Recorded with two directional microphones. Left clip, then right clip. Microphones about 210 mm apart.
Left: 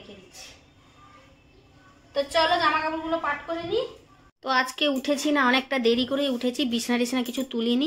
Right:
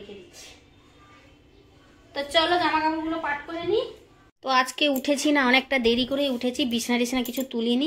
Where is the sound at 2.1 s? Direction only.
20° right (ahead or behind).